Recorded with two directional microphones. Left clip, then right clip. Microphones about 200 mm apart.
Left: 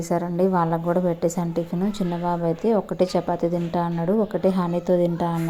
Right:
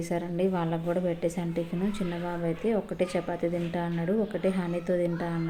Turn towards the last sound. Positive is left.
turn(degrees=30)  # may be behind; listen again after turning